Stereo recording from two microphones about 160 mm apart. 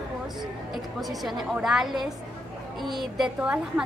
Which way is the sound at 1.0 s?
Centre (ahead or behind).